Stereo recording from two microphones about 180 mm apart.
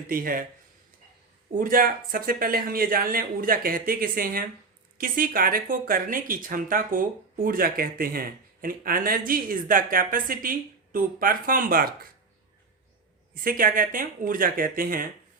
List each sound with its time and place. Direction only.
0.1 s speech: 50° right (ahead or behind)
1.5 s speech: 50° right (ahead or behind)
13.3 s speech: 50° right (ahead or behind)